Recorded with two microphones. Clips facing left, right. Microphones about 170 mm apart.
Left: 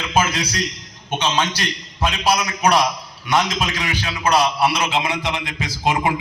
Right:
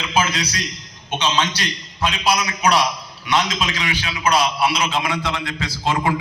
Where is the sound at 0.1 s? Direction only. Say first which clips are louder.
Left 1 dB; 45° left (ahead or behind).